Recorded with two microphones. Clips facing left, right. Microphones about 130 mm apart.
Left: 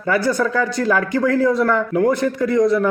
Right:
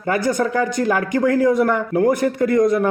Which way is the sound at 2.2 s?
50° right (ahead or behind).